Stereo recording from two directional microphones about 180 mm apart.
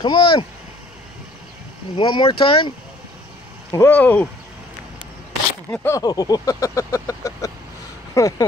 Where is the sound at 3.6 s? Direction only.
15° left (ahead or behind).